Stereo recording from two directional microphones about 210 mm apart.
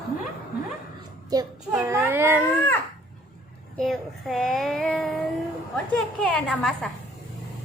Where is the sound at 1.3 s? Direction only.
15° right (ahead or behind).